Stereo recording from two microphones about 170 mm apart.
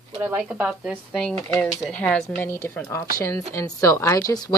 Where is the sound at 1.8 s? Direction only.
5° left (ahead or behind).